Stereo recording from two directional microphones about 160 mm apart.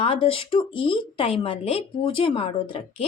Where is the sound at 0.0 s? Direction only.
35° left (ahead or behind).